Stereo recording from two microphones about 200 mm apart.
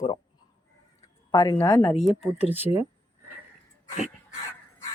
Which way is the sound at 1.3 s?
20° left (ahead or behind).